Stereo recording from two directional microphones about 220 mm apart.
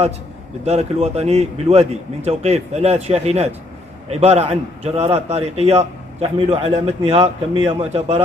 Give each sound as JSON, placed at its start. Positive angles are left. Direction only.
{"t": 0.7, "sound": "a man's voice", "side_deg": -30}